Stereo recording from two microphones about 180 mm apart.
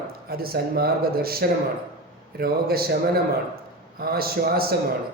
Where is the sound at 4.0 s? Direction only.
55° right (ahead or behind).